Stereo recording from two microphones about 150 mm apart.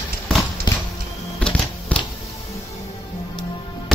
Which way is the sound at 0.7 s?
30° left (ahead or behind).